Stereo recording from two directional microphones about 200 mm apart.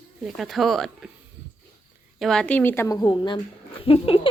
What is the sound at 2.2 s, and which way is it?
A woman's voice, 5° left (ahead or behind).